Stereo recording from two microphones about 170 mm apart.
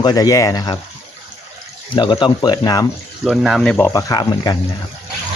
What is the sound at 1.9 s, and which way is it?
Speech, 30° left (ahead or behind).